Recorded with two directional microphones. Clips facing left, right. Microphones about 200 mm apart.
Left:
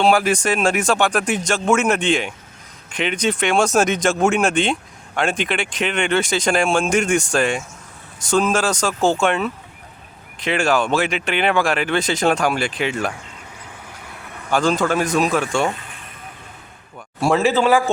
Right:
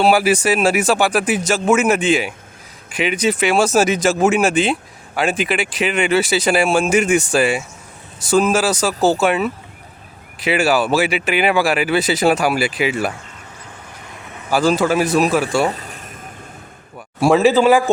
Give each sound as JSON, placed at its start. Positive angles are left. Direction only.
{"t": 0.0, "sound": "speech", "side_deg": -5}
{"t": 14.5, "sound": "speech", "side_deg": -5}
{"t": 15.6, "sound": "a sound", "side_deg": -40}
{"t": 17.2, "sound": "speech", "side_deg": -10}